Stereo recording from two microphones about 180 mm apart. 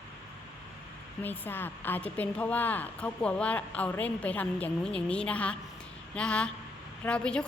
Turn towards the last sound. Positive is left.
turn(degrees=5)  # may be behind; listen again after turning